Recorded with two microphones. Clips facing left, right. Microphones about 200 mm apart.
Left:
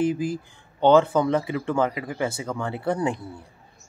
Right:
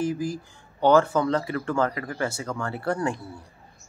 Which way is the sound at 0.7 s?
20° left (ahead or behind).